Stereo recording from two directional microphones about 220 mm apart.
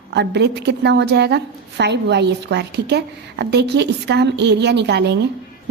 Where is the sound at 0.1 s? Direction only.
50° right (ahead or behind).